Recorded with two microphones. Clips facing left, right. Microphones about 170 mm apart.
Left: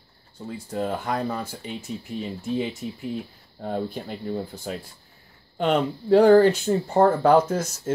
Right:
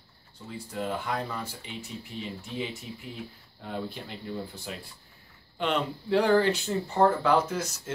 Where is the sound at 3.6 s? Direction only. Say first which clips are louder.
Left 7 dB; 45° left (ahead or behind).